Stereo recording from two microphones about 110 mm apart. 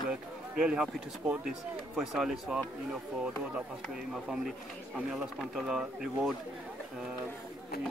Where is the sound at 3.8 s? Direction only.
Centre (ahead or behind).